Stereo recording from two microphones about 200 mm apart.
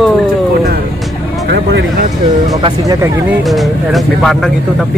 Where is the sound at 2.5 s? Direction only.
20° right (ahead or behind).